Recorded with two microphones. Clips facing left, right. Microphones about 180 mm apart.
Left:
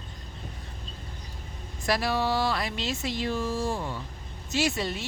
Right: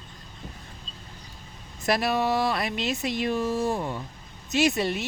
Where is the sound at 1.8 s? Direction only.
20° right (ahead or behind).